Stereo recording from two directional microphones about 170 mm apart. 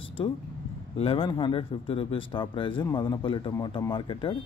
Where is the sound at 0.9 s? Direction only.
35° left (ahead or behind).